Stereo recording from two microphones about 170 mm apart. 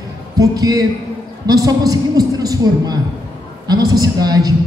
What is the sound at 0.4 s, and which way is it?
A woman's voice, 20° right (ahead or behind).